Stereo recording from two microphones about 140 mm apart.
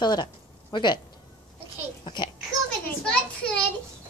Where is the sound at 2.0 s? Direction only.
30° left (ahead or behind).